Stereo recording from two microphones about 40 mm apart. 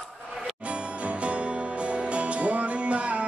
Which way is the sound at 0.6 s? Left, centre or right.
Right.